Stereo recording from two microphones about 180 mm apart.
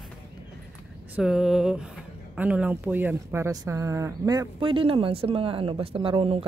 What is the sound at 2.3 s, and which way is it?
Speech, 10° right (ahead or behind).